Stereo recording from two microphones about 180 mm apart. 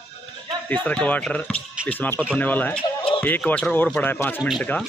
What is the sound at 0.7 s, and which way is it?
A man's voice, 5° left (ahead or behind).